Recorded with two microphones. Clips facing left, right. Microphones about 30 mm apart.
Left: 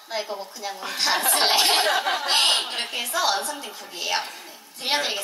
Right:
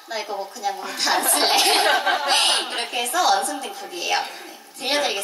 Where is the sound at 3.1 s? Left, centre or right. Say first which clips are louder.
Right 5 dB; centre.